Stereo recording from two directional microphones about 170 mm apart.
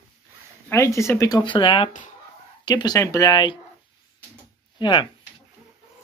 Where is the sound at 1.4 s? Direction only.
30° left (ahead or behind).